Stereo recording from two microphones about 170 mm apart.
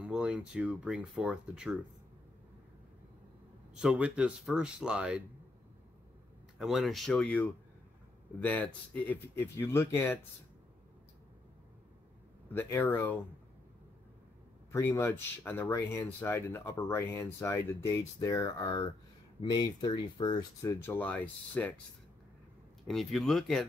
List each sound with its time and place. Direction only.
0.0 s speech: 5° right (ahead or behind)
3.7 s speech: 5° right (ahead or behind)
6.6 s speech: centre (ahead or behind)
12.5 s speech: 10° left (ahead or behind)
14.7 s speech: 15° left (ahead or behind)
22.8 s speech: centre (ahead or behind)